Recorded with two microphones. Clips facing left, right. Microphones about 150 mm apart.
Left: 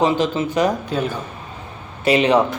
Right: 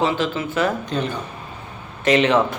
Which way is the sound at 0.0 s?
20° left (ahead or behind).